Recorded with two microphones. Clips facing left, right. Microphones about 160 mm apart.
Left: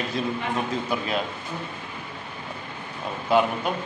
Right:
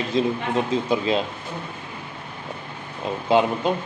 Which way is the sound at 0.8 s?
25° right (ahead or behind).